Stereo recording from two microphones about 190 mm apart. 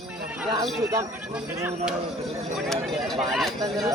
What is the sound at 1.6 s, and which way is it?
Speech, 5° right (ahead or behind).